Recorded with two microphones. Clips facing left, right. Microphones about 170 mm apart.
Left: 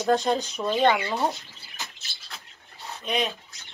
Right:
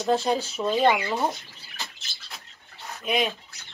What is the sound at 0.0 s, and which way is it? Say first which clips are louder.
Speech: left 1 dB; 5° right (ahead or behind).